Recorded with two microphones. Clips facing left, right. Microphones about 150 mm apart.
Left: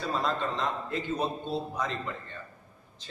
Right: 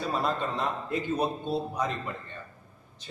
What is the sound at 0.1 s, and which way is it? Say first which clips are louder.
A man's voice: left 1 dB; 10° right (ahead or behind).